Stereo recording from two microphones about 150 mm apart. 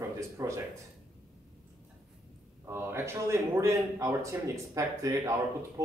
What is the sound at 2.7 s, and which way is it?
Speech, 15° right (ahead or behind).